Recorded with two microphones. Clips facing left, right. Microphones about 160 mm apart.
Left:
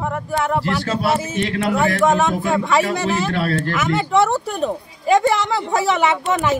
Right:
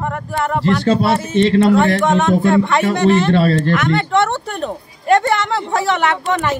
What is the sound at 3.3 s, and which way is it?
Speech, 25° right (ahead or behind).